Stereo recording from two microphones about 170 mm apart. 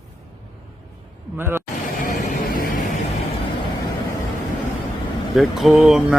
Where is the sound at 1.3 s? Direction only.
15° right (ahead or behind).